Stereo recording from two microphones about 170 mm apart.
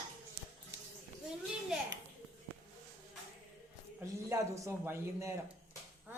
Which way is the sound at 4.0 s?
15° right (ahead or behind).